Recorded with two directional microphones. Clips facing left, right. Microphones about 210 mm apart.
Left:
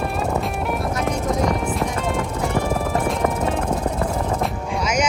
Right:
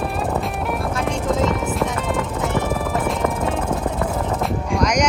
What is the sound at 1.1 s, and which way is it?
Music, 25° right (ahead or behind).